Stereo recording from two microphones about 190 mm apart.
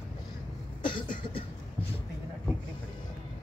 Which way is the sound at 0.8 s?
25° left (ahead or behind).